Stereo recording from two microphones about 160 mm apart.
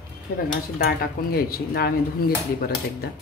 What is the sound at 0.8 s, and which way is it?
Speech, 70° left (ahead or behind).